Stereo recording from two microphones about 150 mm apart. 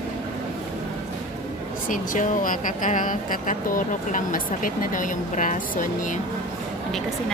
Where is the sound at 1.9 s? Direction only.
60° left (ahead or behind).